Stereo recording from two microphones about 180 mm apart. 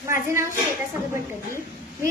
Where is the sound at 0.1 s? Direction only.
15° right (ahead or behind).